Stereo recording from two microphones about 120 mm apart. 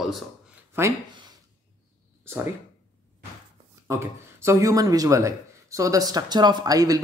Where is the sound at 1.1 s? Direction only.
40° right (ahead or behind).